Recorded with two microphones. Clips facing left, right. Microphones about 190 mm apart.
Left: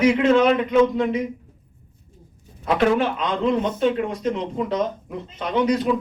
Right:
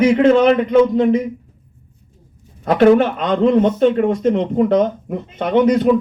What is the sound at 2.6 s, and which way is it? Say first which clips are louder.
Speech: right 8 dB; 45° right (ahead or behind).